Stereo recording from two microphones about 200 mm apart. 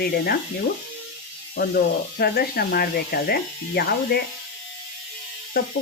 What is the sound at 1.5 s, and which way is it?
Speech, 50° left (ahead or behind).